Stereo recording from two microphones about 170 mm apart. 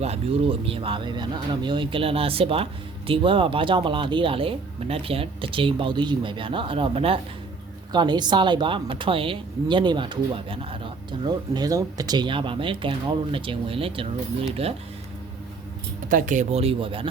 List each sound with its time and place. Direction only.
0.0 s speech: 35° right (ahead or behind)
16.0 s speech: 50° right (ahead or behind); by 17.1 s 30° right (ahead or behind)